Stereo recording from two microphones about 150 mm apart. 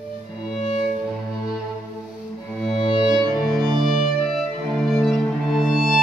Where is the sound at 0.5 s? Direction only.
45° left (ahead or behind).